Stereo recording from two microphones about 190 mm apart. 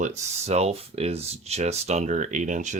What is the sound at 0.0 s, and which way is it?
Speech, 35° right (ahead or behind).